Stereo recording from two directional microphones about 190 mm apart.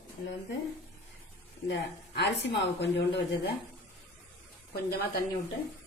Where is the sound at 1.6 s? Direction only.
65° left (ahead or behind).